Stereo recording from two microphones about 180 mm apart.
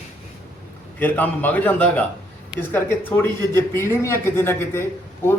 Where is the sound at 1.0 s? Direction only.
10° left (ahead or behind).